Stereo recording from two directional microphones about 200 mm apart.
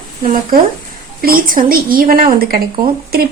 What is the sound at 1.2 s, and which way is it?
A woman's voice, 45° right (ahead or behind).